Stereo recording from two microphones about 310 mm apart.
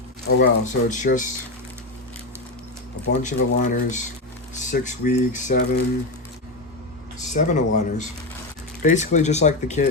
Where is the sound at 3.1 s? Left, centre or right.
Left.